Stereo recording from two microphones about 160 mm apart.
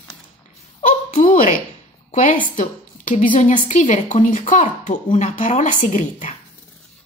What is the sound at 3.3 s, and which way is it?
A woman's voice, 50° left (ahead or behind).